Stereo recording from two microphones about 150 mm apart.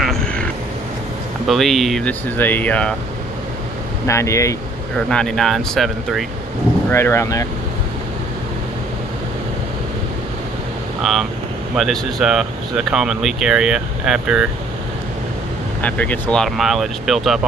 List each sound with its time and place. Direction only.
0.0 s vehicle: 5° left (ahead or behind)
1.5 s speech: centre (ahead or behind)
4.1 s speech: 20° left (ahead or behind)
4.9 s speech: 5° left (ahead or behind)
6.9 s speech: 15° left (ahead or behind)
11.0 s speech: centre (ahead or behind)
15.8 s speech: 10° left (ahead or behind)